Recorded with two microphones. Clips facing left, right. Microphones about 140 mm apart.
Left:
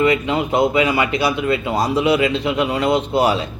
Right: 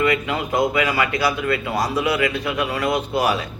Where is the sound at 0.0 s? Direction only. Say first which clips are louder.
Left 4 dB; 25° left (ahead or behind).